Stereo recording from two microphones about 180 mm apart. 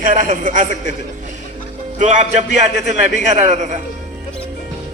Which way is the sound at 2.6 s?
40° right (ahead or behind).